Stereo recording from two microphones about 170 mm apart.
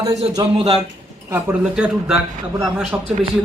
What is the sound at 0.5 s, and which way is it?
Speech, 40° right (ahead or behind).